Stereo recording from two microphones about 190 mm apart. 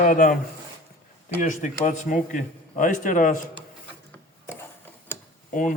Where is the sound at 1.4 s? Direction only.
40° left (ahead or behind).